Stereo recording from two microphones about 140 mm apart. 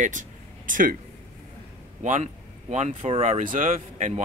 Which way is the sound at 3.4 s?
75° right (ahead or behind).